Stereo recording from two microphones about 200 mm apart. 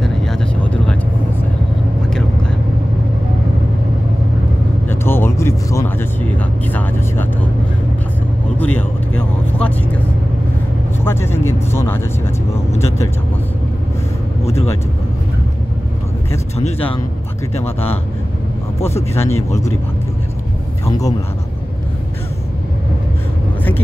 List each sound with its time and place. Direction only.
0.0 s vehicle: centre (ahead or behind)
4.8 s vehicle: 10° left (ahead or behind)
8.5 s vehicle: 5° left (ahead or behind)
11.1 s vehicle: 10° left (ahead or behind)
14.4 s vehicle: 30° left (ahead or behind)
16.5 s a sound: 30° left (ahead or behind)
18.8 s speech: 10° left (ahead or behind)